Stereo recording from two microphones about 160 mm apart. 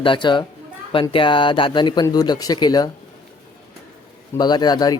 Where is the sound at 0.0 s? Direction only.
30° left (ahead or behind).